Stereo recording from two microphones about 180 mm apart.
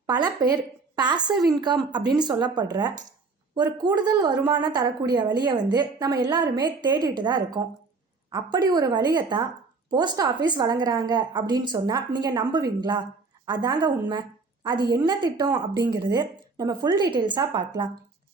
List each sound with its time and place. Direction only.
0.1 s a woman's voice: 20° right (ahead or behind)